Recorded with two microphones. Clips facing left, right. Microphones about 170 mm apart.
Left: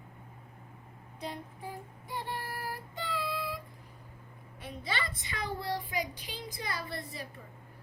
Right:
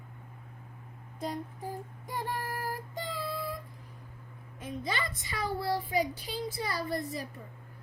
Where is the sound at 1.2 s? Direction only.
45° right (ahead or behind).